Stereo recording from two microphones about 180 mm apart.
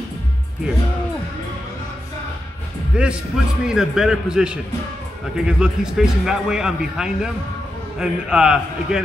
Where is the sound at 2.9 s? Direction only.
5° right (ahead or behind).